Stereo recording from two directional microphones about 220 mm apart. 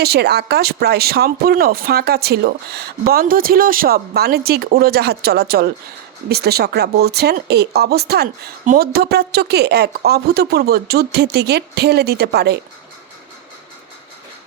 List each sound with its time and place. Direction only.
0.0 s speech: 45° right (ahead or behind)